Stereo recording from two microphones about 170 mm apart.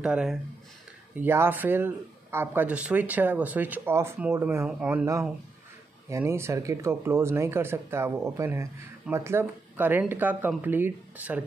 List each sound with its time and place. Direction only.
0.0 s speech: 5° right (ahead or behind)